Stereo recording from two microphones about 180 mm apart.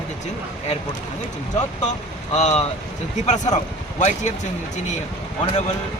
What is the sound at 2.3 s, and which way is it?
Speech, 40° left (ahead or behind).